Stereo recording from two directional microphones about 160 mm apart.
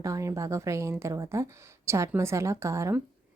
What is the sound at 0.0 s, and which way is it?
Speech, 20° right (ahead or behind).